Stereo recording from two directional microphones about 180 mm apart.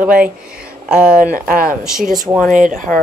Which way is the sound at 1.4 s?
50° right (ahead or behind).